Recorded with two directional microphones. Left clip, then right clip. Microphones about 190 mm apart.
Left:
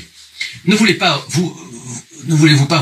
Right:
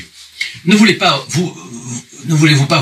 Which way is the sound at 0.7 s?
10° right (ahead or behind).